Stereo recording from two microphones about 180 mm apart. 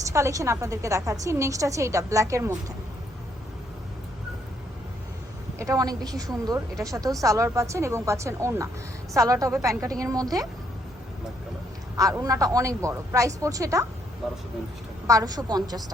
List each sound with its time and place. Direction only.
0.1 s a woman's voice: 15° right (ahead or behind)
5.5 s a woman's voice: 20° right (ahead or behind)
11.9 s a woman's voice: 20° right (ahead or behind)
15.0 s a woman's voice: 20° right (ahead or behind)